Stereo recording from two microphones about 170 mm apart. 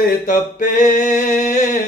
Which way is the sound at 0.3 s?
50° left (ahead or behind).